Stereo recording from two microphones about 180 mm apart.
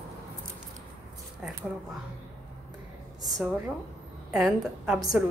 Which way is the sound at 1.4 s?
15° right (ahead or behind).